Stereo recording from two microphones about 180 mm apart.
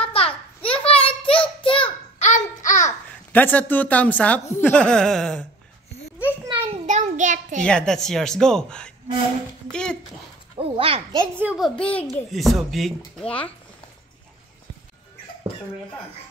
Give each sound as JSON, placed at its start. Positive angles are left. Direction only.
{"t": 0.1, "sound": "a sound", "side_deg": 30}
{"t": 0.8, "sound": "child singing", "side_deg": 30}
{"t": 3.3, "sound": "a woman's voice", "side_deg": 10}
{"t": 6.4, "sound": "a sound", "side_deg": -25}
{"t": 6.9, "sound": "child singing", "side_deg": -45}
{"t": 7.6, "sound": "a woman's voice", "side_deg": 5}
{"t": 9.7, "sound": "a sound", "side_deg": 5}
{"t": 10.6, "sound": "children playing", "side_deg": -30}
{"t": 11.3, "sound": "a woman's voice", "side_deg": -5}
{"t": 11.8, "sound": "a woman's voice", "side_deg": 10}